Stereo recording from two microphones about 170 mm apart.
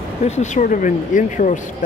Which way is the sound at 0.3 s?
45° left (ahead or behind).